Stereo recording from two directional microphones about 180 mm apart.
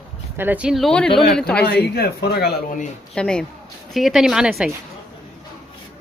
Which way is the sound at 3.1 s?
5° left (ahead or behind).